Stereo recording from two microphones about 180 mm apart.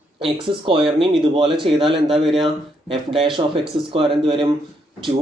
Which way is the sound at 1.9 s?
Centre (ahead or behind).